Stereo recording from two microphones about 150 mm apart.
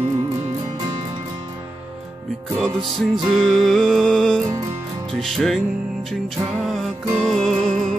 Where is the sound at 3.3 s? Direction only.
Centre (ahead or behind).